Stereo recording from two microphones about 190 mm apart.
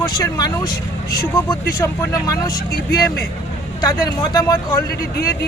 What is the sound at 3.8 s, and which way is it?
Speech, 20° left (ahead or behind).